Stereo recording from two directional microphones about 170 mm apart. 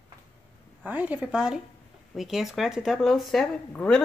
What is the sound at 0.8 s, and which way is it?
A woman's voice, 10° right (ahead or behind).